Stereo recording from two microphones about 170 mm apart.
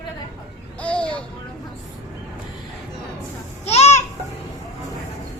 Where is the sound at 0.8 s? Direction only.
5° left (ahead or behind).